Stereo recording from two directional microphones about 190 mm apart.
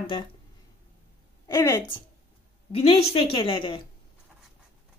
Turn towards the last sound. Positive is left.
turn(degrees=25)  # may be behind; listen again after turning